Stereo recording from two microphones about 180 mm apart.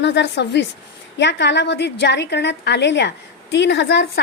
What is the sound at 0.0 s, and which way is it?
A woman's voice, 75° left (ahead or behind).